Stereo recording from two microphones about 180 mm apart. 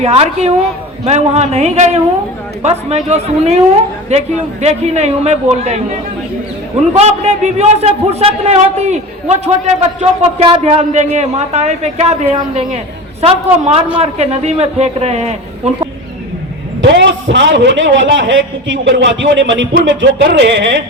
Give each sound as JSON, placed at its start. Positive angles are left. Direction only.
{"t": 0.0, "sound": "a man's voice", "side_deg": -35}
{"t": 6.9, "sound": "a man's voice", "side_deg": -35}
{"t": 16.9, "sound": "a man's voice", "side_deg": -85}